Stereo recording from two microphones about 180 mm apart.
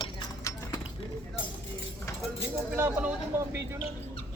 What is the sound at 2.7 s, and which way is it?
Speech, 10° right (ahead or behind).